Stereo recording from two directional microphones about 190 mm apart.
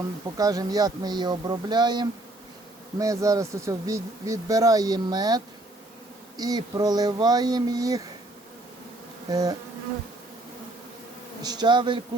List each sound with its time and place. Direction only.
0.3 s speech: 20° right (ahead or behind)
9.3 s speech: 20° right (ahead or behind)
11.4 s speech: 20° right (ahead or behind)